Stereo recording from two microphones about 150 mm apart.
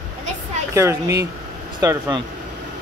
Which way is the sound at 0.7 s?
20° right (ahead or behind).